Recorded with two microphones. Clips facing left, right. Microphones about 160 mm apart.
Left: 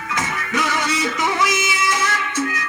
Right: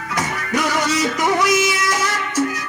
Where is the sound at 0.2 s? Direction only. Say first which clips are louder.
Right 3 dB; 40° right (ahead or behind).